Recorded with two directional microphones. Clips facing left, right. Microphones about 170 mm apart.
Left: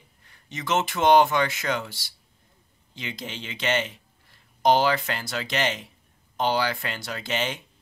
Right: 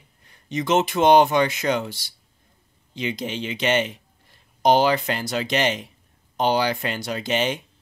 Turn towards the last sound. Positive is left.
turn(degrees=-20)  # may be behind; listen again after turning